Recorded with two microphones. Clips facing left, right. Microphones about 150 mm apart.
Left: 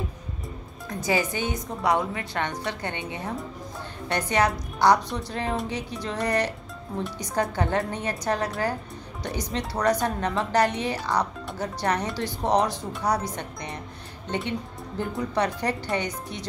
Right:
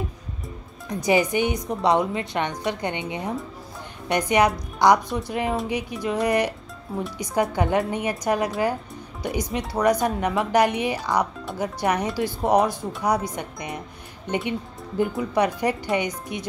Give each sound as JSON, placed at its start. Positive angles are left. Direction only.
{"t": 0.8, "sound": "a woman's voice", "side_deg": -20}